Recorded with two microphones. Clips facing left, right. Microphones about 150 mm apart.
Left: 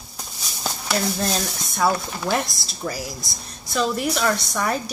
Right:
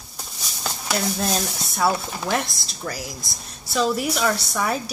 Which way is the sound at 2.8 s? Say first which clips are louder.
Left 2 dB; 15° left (ahead or behind).